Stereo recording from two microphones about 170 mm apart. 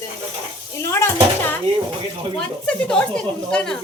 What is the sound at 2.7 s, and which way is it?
Speech, 5° left (ahead or behind).